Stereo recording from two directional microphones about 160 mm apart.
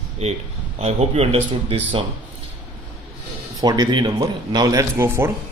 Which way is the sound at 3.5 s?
25° right (ahead or behind).